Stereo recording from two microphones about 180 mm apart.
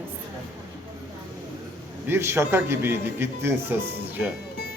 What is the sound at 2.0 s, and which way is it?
A man's voice, 15° right (ahead or behind).